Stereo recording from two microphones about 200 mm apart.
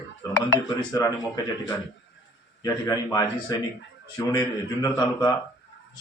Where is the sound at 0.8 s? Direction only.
20° left (ahead or behind).